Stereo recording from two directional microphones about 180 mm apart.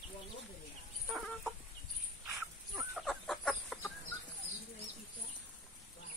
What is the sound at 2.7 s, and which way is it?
Chicken, centre (ahead or behind).